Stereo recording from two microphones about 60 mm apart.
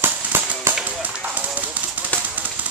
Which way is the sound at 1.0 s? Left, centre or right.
Right.